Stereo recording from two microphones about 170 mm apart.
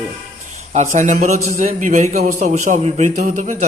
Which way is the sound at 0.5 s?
45° right (ahead or behind).